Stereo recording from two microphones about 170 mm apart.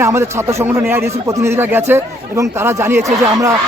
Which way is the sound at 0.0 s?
15° right (ahead or behind).